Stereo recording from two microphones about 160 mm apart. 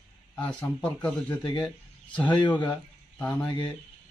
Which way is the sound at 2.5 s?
10° left (ahead or behind).